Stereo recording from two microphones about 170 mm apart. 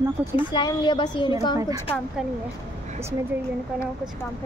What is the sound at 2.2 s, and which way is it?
Speech, 5° right (ahead or behind).